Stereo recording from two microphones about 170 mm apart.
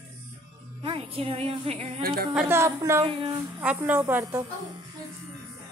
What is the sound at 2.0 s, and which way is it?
Speech, 60° right (ahead or behind).